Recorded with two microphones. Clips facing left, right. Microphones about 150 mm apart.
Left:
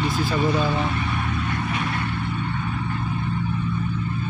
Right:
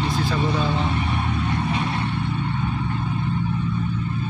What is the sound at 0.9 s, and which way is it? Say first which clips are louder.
Vehicle: right 2 dB; 25° right (ahead or behind).